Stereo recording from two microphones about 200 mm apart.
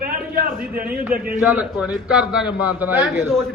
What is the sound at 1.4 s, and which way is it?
A man's voice, 5° right (ahead or behind).